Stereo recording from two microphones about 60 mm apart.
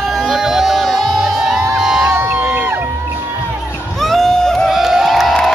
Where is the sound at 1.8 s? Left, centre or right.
Centre.